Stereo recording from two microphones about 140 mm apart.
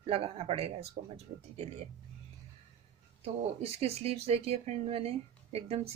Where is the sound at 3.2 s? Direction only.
50° right (ahead or behind).